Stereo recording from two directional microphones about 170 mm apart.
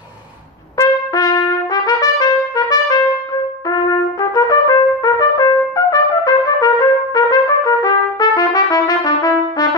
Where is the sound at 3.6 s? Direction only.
20° left (ahead or behind).